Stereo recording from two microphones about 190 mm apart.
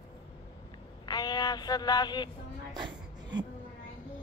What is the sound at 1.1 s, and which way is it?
Music, 20° left (ahead or behind).